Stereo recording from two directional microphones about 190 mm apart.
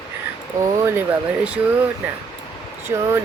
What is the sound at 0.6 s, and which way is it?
Speech, 15° right (ahead or behind).